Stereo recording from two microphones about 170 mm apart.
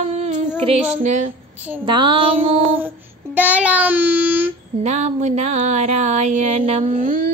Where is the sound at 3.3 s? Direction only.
10° right (ahead or behind).